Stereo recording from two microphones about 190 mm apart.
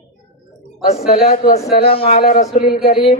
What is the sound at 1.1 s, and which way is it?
Speech, 50° left (ahead or behind).